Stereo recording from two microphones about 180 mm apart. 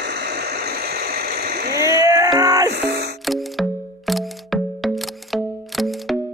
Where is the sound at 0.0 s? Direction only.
65° right (ahead or behind).